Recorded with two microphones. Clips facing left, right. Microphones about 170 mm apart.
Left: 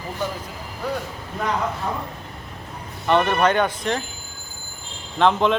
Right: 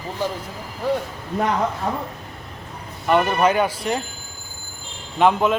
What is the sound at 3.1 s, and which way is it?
Speech, 5° right (ahead or behind).